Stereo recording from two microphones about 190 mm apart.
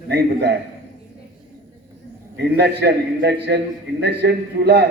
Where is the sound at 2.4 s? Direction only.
60° right (ahead or behind).